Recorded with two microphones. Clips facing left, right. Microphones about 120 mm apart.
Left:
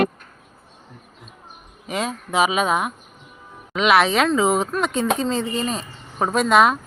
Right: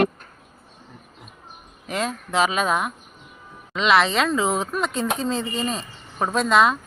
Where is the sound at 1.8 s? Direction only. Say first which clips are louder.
Left 1 dB; centre (ahead or behind).